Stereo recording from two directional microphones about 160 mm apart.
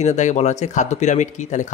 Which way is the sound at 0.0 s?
45° left (ahead or behind).